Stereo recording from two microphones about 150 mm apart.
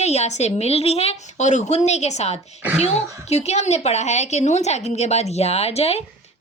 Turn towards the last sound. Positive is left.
turn(degrees=45)  # may be behind; listen again after turning